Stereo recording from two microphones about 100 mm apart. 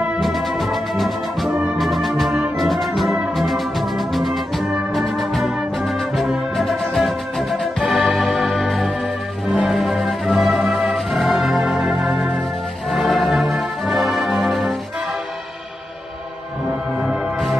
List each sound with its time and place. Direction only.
0.2 s music: centre (ahead or behind)
17.0 s music: centre (ahead or behind)